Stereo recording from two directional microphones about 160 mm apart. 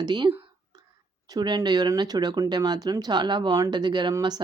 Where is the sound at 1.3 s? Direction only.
25° right (ahead or behind).